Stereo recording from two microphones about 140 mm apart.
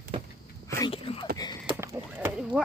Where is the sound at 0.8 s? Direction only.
40° left (ahead or behind).